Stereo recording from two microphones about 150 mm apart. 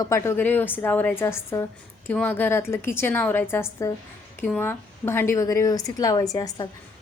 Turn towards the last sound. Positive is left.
turn(degrees=25)  # may be behind; listen again after turning